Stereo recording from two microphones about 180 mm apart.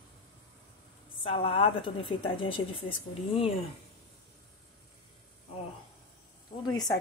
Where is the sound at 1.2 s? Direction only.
30° left (ahead or behind).